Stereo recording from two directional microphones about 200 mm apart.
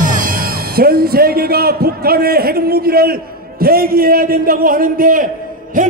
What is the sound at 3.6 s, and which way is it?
A man's voice, 50° right (ahead or behind).